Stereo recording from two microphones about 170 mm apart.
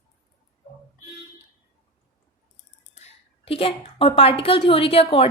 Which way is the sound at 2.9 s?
35° left (ahead or behind).